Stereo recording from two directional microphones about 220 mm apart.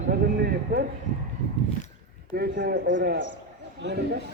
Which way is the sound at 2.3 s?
45° right (ahead or behind).